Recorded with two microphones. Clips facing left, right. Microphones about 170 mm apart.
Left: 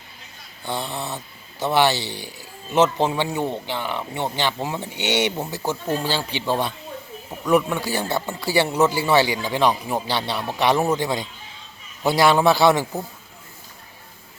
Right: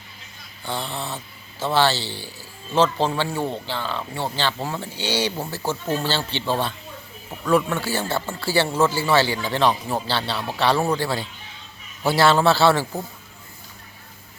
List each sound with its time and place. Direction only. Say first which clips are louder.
0.6 s speech: left 1 dB; 20° left (ahead or behind)